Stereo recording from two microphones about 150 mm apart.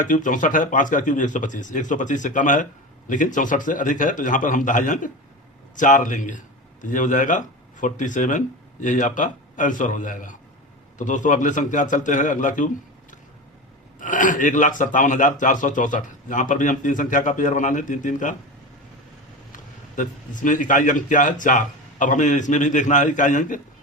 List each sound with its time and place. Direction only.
0.0 s speech: 60° left (ahead or behind)
20.0 s speech: 60° left (ahead or behind)